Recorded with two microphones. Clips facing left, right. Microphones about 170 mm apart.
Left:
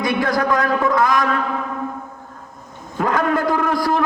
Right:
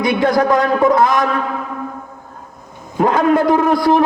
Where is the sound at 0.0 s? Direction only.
25° right (ahead or behind).